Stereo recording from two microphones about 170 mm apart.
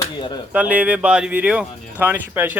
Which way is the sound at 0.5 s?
10° right (ahead or behind).